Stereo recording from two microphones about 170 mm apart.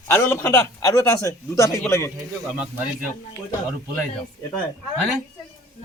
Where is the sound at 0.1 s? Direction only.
15° left (ahead or behind).